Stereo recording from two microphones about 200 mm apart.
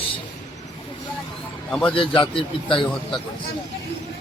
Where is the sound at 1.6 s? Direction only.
5° left (ahead or behind).